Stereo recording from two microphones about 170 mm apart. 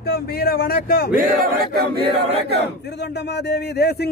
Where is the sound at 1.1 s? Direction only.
60° right (ahead or behind).